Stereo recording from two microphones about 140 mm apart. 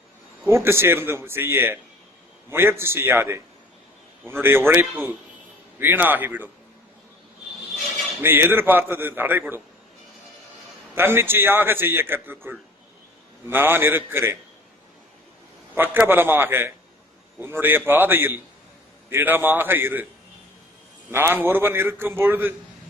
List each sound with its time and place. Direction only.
0.4 s a man's voice: 15° right (ahead or behind)
8.2 s a man's voice: 15° right (ahead or behind)
10.9 s a man's voice: 15° right (ahead or behind)
15.7 s a man's voice: 15° right (ahead or behind)
21.1 s a man's voice: 15° right (ahead or behind)